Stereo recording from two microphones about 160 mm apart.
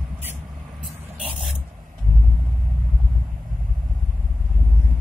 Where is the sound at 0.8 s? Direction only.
5° right (ahead or behind).